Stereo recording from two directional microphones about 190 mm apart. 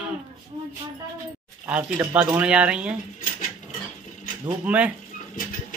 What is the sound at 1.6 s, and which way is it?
Speech, 10° right (ahead or behind).